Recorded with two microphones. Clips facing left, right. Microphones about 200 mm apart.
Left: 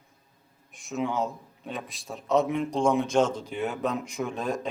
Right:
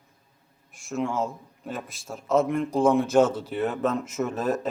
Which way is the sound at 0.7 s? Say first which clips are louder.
Right 1 dB; centre (ahead or behind).